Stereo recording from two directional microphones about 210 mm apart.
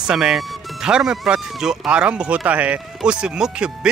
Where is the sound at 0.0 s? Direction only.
5° right (ahead or behind).